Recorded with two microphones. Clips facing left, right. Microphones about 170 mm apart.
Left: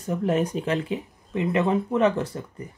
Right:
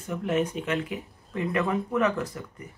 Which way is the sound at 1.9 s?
30° left (ahead or behind).